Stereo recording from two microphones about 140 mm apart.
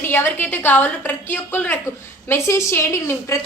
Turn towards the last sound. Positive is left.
turn(degrees=20)  # may be behind; listen again after turning